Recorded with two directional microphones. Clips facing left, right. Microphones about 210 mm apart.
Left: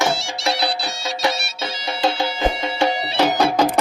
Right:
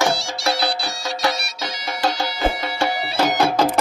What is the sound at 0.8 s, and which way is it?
Music, 20° left (ahead or behind).